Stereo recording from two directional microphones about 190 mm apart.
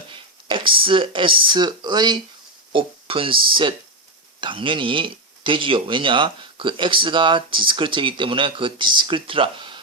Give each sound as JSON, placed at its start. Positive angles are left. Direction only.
{"t": 0.1, "sound": "speech", "side_deg": -25}